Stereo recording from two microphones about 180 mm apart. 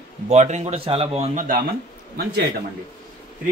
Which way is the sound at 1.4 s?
50° right (ahead or behind).